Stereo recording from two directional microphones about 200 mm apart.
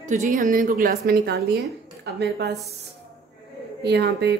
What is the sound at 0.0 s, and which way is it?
A woman's voice, 40° right (ahead or behind).